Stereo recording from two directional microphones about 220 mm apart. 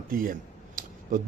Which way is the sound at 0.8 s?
40° right (ahead or behind).